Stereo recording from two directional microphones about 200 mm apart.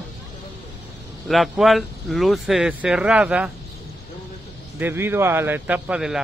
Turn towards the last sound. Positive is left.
turn(degrees=-5)  # may be behind; listen again after turning